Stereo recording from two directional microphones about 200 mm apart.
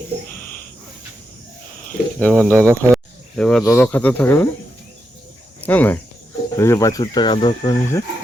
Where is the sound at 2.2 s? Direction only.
5° left (ahead or behind).